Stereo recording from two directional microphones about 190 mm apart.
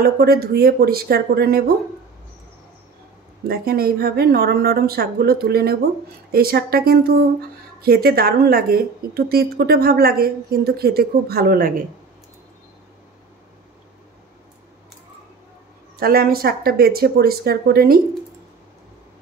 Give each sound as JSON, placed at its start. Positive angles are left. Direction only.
{"t": 0.0, "sound": "a woman's voice", "side_deg": -55}
{"t": 3.4, "sound": "a woman's voice", "side_deg": -55}
{"t": 16.0, "sound": "a woman's voice", "side_deg": -50}